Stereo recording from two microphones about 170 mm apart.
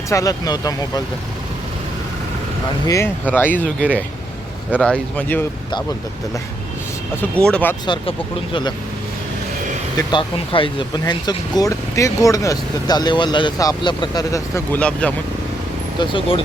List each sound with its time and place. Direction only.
0.1 s speech: 20° left (ahead or behind)
2.8 s speech: 20° left (ahead or behind)
3.6 s speech: 10° right (ahead or behind)
4.8 s speech: 5° left (ahead or behind)
7.2 s speech: 5° left (ahead or behind)
10.1 s speech: 30° left (ahead or behind); by 15.1 s 5° left (ahead or behind)
16.0 s speech: 30° left (ahead or behind)